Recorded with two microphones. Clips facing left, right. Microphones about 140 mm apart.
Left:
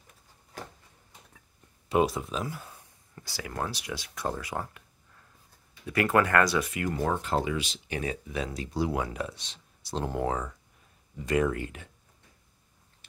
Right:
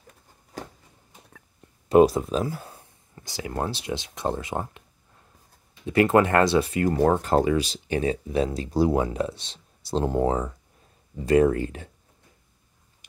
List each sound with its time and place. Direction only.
1.9 s speech: 40° right (ahead or behind)
3.2 s speech: 20° right (ahead or behind)
7.0 s speech: 45° right (ahead or behind)